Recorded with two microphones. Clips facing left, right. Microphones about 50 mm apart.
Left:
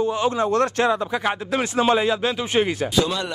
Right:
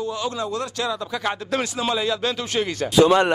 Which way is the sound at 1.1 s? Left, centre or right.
Centre.